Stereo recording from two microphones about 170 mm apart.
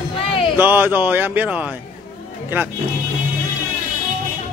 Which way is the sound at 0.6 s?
10° right (ahead or behind).